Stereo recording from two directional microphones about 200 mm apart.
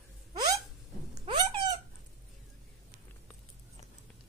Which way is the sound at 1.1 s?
25° right (ahead or behind).